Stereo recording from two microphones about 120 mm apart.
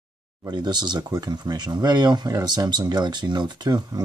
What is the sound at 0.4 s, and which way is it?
Speech, 35° right (ahead or behind).